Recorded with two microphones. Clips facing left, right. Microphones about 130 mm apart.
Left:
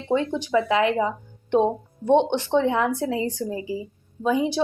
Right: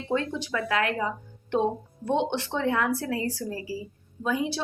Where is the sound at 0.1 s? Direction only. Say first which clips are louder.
Left 7 dB; 20° left (ahead or behind).